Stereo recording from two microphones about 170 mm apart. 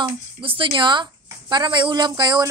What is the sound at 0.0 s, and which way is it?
Speech, 30° right (ahead or behind).